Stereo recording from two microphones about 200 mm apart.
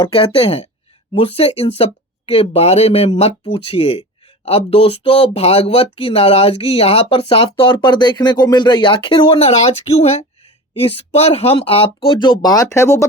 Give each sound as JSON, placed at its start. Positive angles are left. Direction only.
{"t": 0.0, "sound": "speech", "side_deg": 25}